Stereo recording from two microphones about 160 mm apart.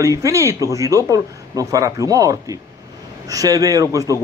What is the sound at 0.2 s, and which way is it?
Speech, 20° right (ahead or behind).